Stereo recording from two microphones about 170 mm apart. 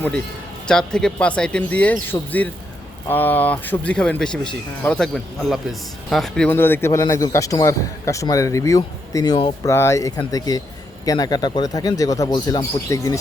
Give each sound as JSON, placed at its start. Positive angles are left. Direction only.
{"t": 0.7, "sound": "a man's voice", "side_deg": 5}